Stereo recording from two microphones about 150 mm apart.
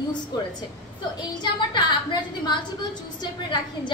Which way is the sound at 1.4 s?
30° left (ahead or behind).